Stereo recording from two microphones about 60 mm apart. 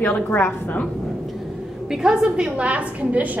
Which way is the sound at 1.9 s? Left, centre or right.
Centre.